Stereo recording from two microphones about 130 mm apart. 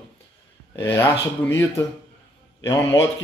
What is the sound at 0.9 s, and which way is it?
Speech, 20° left (ahead or behind).